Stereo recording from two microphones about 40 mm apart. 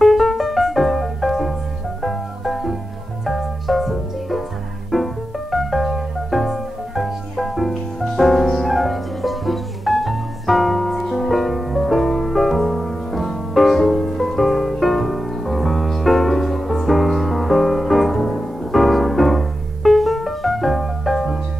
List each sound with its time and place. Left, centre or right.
0.0 s music: centre